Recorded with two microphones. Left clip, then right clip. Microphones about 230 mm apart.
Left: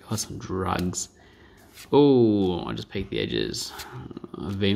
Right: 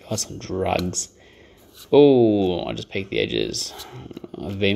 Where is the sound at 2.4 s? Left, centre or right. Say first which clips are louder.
Right 4 dB; left.